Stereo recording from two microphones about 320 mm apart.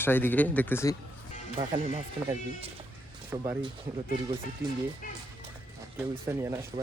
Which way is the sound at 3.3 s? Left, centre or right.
Centre.